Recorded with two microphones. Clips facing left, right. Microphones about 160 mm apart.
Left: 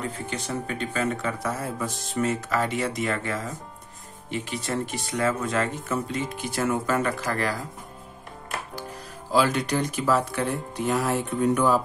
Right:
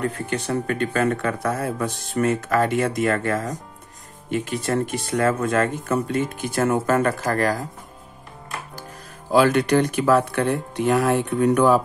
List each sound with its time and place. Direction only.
0.0 s speech: 60° right (ahead or behind)
9.3 s speech: 60° right (ahead or behind)